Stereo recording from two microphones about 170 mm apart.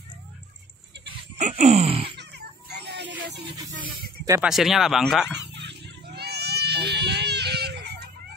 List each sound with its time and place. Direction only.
1.4 s groan: 40° right (ahead or behind)
2.1 s children playing: 80° right
4.5 s speech: centre (ahead or behind)
5.5 s a sound: 85° right